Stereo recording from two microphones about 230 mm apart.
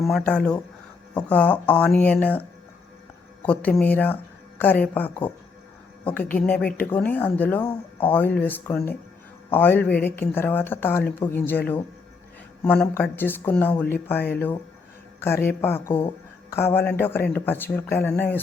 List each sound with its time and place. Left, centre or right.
0.0 s speech: centre
3.4 s speech: centre
6.3 s speech: centre
6.6 s speech: left
6.9 s speech: centre
12.6 s speech: centre